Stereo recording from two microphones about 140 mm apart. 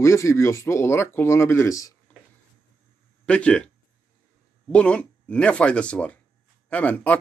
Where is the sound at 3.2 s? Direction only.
10° left (ahead or behind).